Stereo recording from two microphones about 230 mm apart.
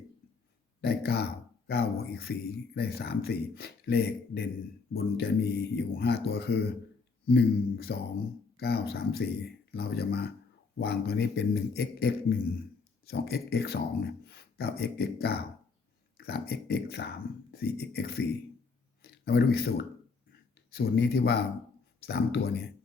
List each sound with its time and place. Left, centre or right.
0.8 s a man's voice: left